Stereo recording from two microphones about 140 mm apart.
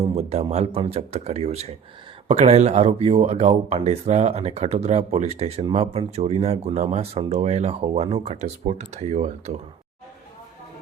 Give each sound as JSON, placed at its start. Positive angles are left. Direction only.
{"t": 0.1, "sound": "speech", "side_deg": -50}